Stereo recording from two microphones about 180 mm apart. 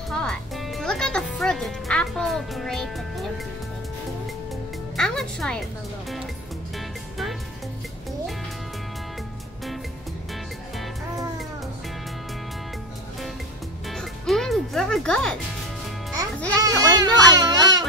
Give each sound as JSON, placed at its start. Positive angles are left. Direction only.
{"t": 0.1, "sound": "speech", "side_deg": 5}
{"t": 4.9, "sound": "music", "side_deg": 5}
{"t": 13.8, "sound": "music", "side_deg": 0}
{"t": 16.6, "sound": "speech", "side_deg": -20}